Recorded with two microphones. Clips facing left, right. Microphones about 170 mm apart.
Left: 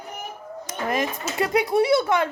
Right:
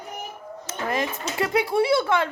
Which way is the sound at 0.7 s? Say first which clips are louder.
Left 1 dB; 20° left (ahead or behind).